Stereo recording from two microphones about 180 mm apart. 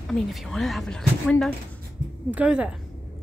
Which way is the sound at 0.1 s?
Centre (ahead or behind).